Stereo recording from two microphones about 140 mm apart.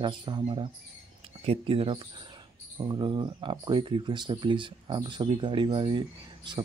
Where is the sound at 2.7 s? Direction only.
30° right (ahead or behind).